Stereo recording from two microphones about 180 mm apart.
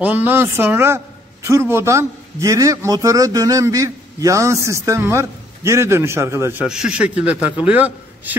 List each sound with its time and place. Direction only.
0.0 s a man's voice: 10° right (ahead or behind)